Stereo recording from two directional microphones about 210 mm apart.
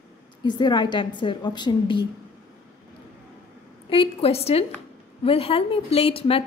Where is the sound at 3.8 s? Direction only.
25° left (ahead or behind).